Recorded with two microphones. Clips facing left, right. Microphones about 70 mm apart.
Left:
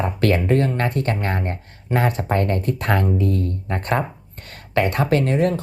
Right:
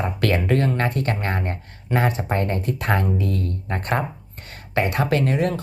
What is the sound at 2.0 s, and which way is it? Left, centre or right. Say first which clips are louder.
Speech: left 2 dB; left.